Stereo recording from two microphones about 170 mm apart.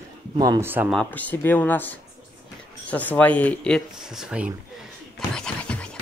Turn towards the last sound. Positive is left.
turn(degrees=5)  # may be behind; listen again after turning